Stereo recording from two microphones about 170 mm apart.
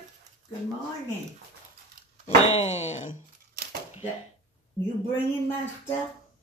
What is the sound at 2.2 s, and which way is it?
Speech, 40° left (ahead or behind).